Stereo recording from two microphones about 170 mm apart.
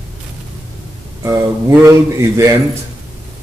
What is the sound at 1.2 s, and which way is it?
Speech, 15° right (ahead or behind).